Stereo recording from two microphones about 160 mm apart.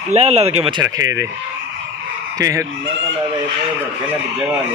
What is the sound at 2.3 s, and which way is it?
Speech, 20° right (ahead or behind).